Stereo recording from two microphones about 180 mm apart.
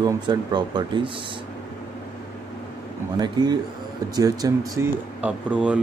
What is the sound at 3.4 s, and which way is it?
Speech, 25° right (ahead or behind).